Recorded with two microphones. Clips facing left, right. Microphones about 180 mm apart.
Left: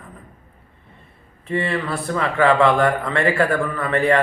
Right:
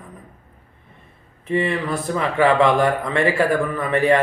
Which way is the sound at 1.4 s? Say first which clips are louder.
Right 2 dB; 15° right (ahead or behind).